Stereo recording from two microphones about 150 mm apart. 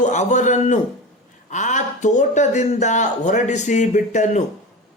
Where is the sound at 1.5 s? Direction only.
55° left (ahead or behind).